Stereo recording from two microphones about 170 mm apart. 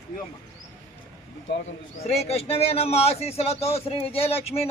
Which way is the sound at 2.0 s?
35° left (ahead or behind).